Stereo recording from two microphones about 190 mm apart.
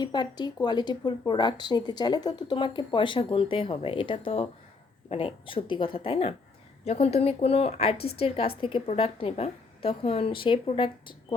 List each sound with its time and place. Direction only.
0.0 s a woman's voice: 25° left (ahead or behind)
7.9 s a woman's voice: 55° left (ahead or behind)
8.2 s speech: 30° left (ahead or behind)